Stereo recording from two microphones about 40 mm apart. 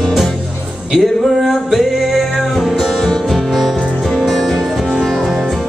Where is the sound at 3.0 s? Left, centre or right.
Centre.